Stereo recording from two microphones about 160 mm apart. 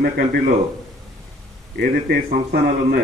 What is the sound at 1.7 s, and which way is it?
Speech, 70° right (ahead or behind).